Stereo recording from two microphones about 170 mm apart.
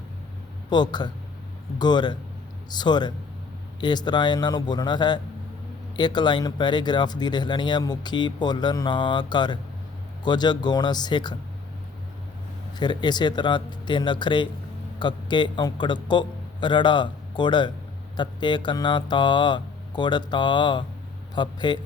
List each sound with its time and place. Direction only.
0.7 s speech: 25° left (ahead or behind)
12.8 s a man's voice: 25° left (ahead or behind)